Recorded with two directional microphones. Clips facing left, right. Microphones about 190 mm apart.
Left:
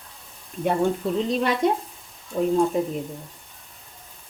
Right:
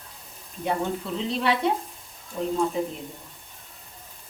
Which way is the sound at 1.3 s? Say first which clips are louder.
Even; 45° left (ahead or behind).